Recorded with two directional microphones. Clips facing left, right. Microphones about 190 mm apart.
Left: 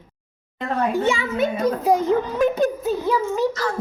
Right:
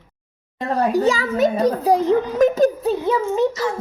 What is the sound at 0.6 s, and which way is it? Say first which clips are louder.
A child's voice: right 3 dB; 35° right (ahead or behind).